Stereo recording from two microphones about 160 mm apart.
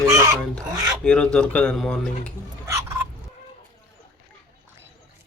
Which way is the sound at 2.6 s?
20° right (ahead or behind).